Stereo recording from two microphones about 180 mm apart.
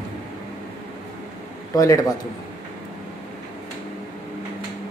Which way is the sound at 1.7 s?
20° left (ahead or behind).